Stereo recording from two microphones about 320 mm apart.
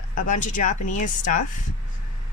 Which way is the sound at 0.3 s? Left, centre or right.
Left.